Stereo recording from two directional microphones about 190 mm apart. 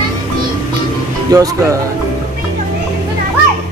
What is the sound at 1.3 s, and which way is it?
Speech, 20° right (ahead or behind).